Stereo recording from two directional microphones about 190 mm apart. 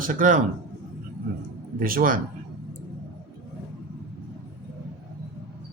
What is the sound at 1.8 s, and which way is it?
Speech, 45° right (ahead or behind).